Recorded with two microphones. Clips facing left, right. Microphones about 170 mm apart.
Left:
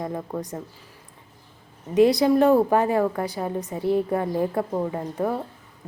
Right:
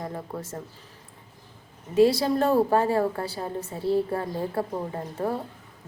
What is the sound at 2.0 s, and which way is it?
Speech, 15° left (ahead or behind).